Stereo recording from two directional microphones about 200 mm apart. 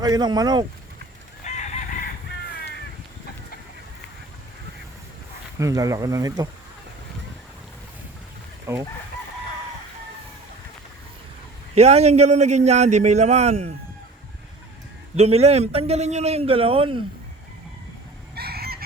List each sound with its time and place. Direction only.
0.0 s speech: 20° right (ahead or behind)
1.5 s chicken: 35° left (ahead or behind)
5.5 s speech: 15° right (ahead or behind)
8.7 s speech: 10° right (ahead or behind)
11.7 s a man's voice: 30° right (ahead or behind)
15.1 s a man's voice: 30° right (ahead or behind)
18.3 s chicken: 50° right (ahead or behind)